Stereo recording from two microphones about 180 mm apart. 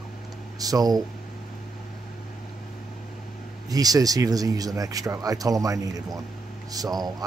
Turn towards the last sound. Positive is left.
turn(degrees=-20)  # may be behind; listen again after turning